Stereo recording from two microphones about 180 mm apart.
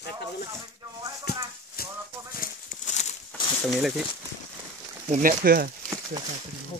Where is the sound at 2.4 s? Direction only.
40° left (ahead or behind).